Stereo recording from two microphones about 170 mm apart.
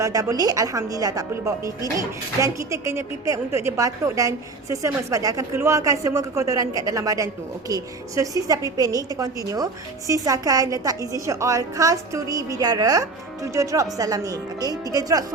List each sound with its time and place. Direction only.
0.0 s a woman's voice: 20° right (ahead or behind)